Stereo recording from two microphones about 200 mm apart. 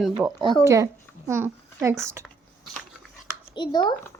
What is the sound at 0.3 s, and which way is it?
Speech, 15° right (ahead or behind).